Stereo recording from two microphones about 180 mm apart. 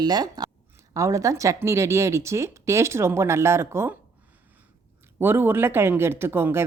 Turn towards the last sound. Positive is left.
turn(degrees=-10)  # may be behind; listen again after turning